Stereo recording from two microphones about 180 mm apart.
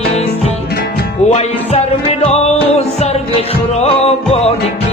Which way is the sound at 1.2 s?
35° left (ahead or behind).